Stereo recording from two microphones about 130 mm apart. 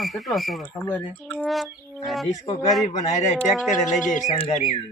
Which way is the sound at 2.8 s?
65° left (ahead or behind).